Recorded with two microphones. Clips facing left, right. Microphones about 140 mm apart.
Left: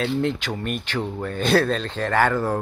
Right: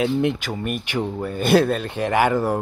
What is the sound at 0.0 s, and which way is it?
Speech, 15° right (ahead or behind).